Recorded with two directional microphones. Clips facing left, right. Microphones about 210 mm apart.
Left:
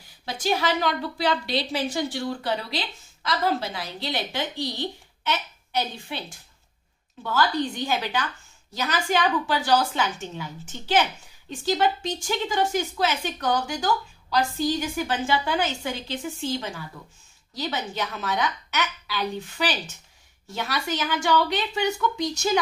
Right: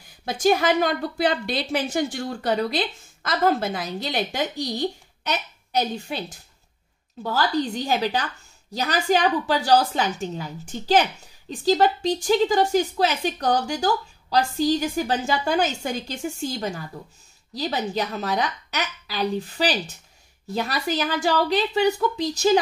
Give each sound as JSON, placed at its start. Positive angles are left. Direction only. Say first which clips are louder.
{"t": 0.2, "sound": "a woman's voice", "louder": "right 5 dB", "side_deg": -50}
{"t": 11.6, "sound": "a woman's voice", "louder": "right 4 dB", "side_deg": -40}